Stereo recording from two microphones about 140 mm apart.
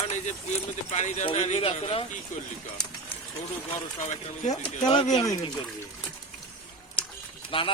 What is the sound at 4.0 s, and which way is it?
Speech, 60° left (ahead or behind).